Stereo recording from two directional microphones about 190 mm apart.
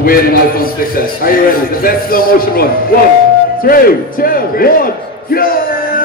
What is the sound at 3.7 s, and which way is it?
A man's voice, 50° left (ahead or behind).